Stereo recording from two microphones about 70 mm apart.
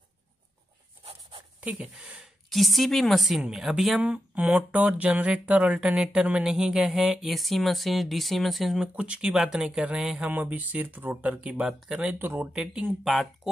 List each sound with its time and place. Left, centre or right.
1.6 s speech: centre
2.5 s speech: centre
4.0 s speech: right; by 8.8 s centre
8.8 s speech: centre
10.2 s speech: right
12.2 s speech: right
12.5 s speech: centre
13.0 s speech: centre